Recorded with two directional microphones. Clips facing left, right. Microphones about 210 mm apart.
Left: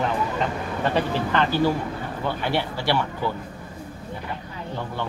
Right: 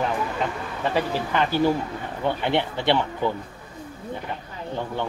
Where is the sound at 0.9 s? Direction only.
10° right (ahead or behind).